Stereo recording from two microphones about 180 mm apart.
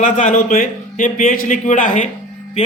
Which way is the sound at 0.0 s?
45° left (ahead or behind).